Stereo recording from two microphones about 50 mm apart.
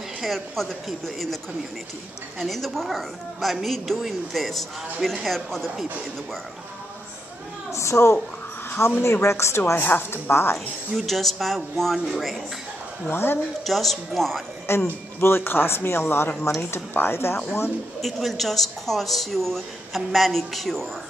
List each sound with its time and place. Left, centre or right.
0.2 s a woman's voice: centre
7.7 s speech: left
9.8 s speech: left
11.0 s a woman's voice: centre
13.1 s speech: left
13.7 s a woman's voice: centre
14.7 s speech: left
16.5 s speech: left
16.9 s speech: left
18.0 s a woman's voice: centre